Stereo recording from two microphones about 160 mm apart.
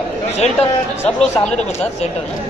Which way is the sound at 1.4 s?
45° left (ahead or behind).